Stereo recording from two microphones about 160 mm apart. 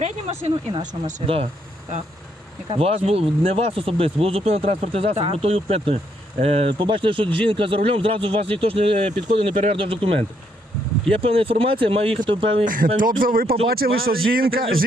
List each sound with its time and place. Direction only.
0.0 s speech: 40° right (ahead or behind)
2.6 s speech: 35° right (ahead or behind)
12.6 s speech: 60° right (ahead or behind)